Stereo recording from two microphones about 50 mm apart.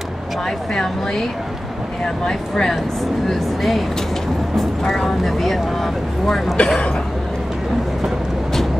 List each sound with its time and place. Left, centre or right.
2.2 s speech: centre
6.5 s speech: centre